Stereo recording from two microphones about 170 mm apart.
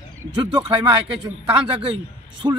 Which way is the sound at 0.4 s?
30° right (ahead or behind).